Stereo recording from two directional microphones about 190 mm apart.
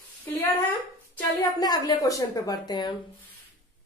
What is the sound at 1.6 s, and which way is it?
A woman's voice, 20° left (ahead or behind).